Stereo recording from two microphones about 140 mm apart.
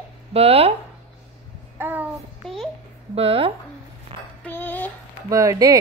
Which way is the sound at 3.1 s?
45° right (ahead or behind).